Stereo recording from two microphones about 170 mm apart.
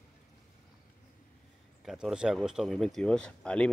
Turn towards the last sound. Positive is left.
turn(degrees=5)  # may be behind; listen again after turning